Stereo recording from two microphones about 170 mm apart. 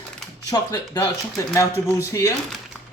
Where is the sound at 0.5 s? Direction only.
20° left (ahead or behind).